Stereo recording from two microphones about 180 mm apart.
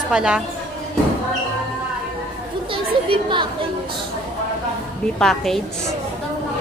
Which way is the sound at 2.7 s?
25° right (ahead or behind).